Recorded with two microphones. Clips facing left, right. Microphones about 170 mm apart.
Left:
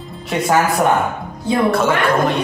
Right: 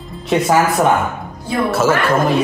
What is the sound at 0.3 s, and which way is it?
Speech, centre (ahead or behind).